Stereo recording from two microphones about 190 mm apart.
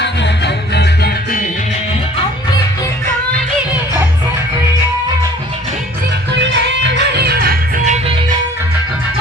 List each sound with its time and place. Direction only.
0.0 s music: 65° left (ahead or behind)
6.9 s music: 60° right (ahead or behind)